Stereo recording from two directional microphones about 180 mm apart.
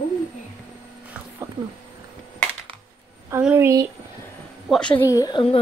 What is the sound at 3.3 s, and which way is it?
Speech, 10° right (ahead or behind).